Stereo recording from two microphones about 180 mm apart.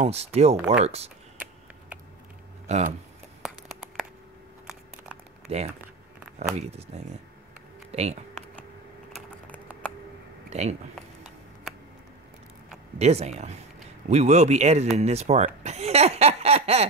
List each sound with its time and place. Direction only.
0.0 s speech: 35° right (ahead or behind)
2.6 s speech: 40° right (ahead or behind)
5.5 s speech: 35° right (ahead or behind)
6.7 s speech: 35° right (ahead or behind)
9.1 s typing: 10° left (ahead or behind)
10.5 s speech: 35° right (ahead or behind)
13.0 s speech: 35° right (ahead or behind)